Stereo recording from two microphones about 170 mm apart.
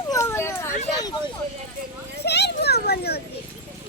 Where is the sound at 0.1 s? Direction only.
15° left (ahead or behind).